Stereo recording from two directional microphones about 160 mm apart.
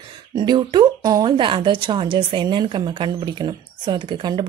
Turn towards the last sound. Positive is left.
turn(degrees=-30)  # may be behind; listen again after turning